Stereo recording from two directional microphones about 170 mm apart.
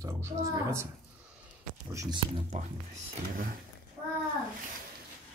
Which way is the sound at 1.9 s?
20° right (ahead or behind).